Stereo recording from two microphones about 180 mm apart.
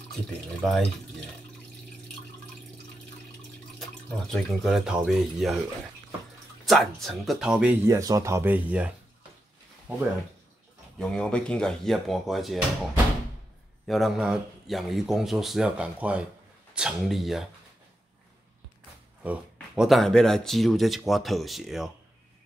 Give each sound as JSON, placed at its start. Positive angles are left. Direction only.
{"t": 0.6, "sound": "speech", "side_deg": 0}
{"t": 4.3, "sound": "speech", "side_deg": 0}
{"t": 6.6, "sound": "speech", "side_deg": 0}
{"t": 7.9, "sound": "speech", "side_deg": -20}
{"t": 11.0, "sound": "speech", "side_deg": 5}
{"t": 13.8, "sound": "speech", "side_deg": 0}
{"t": 19.2, "sound": "speech", "side_deg": -5}